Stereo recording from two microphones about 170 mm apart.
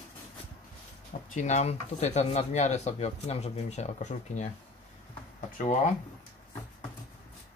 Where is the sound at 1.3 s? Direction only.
45° left (ahead or behind).